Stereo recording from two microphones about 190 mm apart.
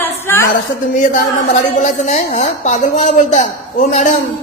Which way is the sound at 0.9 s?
45° left (ahead or behind).